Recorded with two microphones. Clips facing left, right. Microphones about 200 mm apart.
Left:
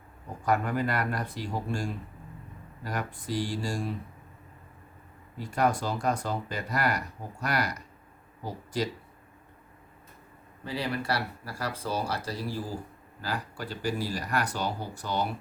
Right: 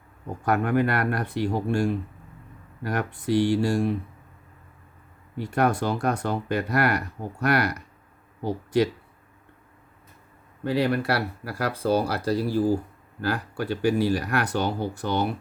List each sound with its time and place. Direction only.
0.4 s speech: 65° right (ahead or behind)
5.4 s speech: 65° right (ahead or behind)
10.6 s speech: 65° right (ahead or behind)